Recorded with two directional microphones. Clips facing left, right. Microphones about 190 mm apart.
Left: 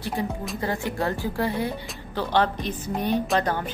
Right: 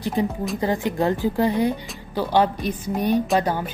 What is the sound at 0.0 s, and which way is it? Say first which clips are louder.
Speech: right 5 dB; 20° right (ahead or behind).